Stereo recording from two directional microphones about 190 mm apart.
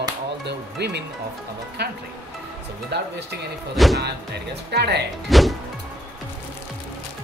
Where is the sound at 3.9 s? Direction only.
60° right (ahead or behind).